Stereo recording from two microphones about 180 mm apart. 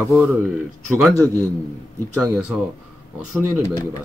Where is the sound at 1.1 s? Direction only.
15° right (ahead or behind).